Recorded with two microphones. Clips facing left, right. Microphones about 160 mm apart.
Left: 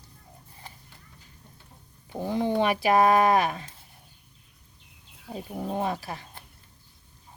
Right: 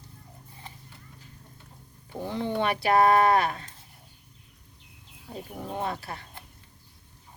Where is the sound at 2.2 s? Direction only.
10° left (ahead or behind).